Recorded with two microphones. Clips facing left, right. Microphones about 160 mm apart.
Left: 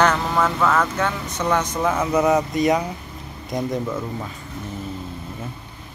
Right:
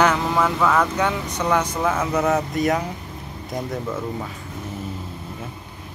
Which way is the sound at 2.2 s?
15° left (ahead or behind).